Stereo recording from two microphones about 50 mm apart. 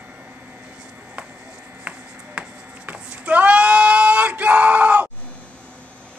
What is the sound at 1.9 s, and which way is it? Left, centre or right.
Music, centre.